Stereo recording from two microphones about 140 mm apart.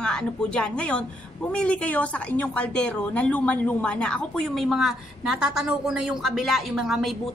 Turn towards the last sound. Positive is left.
turn(degrees=0)  # may be behind; listen again after turning